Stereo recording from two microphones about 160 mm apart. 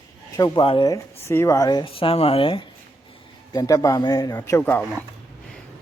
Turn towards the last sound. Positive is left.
turn(degrees=10)  # may be behind; listen again after turning